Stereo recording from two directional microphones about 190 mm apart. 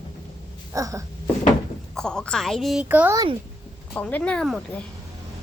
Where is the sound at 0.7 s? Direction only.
15° right (ahead or behind).